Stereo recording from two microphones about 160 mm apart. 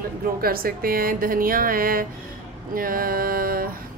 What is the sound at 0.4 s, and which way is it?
A woman's voice, 70° right (ahead or behind).